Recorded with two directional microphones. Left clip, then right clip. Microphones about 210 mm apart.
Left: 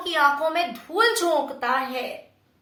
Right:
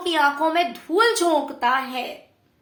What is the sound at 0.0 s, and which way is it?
Speech, 35° right (ahead or behind).